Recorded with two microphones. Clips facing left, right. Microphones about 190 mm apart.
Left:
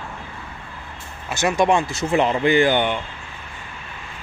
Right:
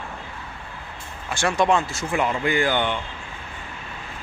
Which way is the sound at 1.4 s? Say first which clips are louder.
Left 2 dB; 15° left (ahead or behind).